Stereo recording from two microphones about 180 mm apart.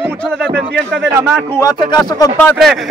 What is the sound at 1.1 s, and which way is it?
Speech, 15° right (ahead or behind).